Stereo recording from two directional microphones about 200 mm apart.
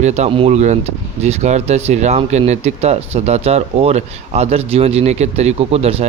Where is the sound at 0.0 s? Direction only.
35° right (ahead or behind).